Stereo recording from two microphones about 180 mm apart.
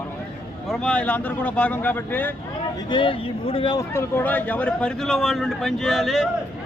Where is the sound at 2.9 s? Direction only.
30° left (ahead or behind).